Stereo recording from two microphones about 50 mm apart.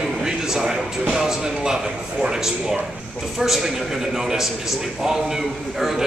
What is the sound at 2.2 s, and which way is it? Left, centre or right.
A man's voice, centre.